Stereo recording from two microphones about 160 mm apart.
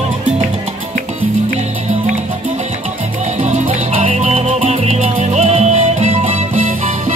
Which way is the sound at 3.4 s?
45° right (ahead or behind).